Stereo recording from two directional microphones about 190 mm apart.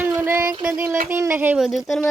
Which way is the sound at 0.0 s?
10° right (ahead or behind).